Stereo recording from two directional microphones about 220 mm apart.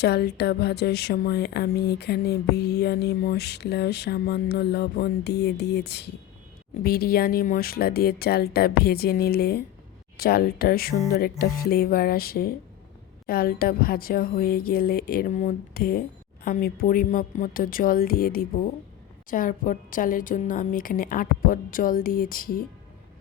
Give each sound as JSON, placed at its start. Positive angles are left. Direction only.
{"t": 0.0, "sound": "speech", "side_deg": 45}